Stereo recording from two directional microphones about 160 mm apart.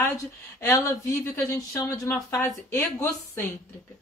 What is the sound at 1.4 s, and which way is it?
A woman's voice, 20° left (ahead or behind).